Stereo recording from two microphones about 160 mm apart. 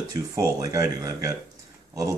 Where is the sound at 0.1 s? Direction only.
25° right (ahead or behind).